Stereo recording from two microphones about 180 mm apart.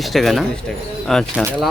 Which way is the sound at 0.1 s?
Centre (ahead or behind).